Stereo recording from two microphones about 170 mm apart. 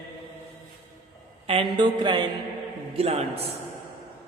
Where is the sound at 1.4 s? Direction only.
30° right (ahead or behind).